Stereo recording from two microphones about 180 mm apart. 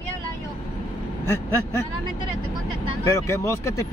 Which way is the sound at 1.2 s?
15° left (ahead or behind).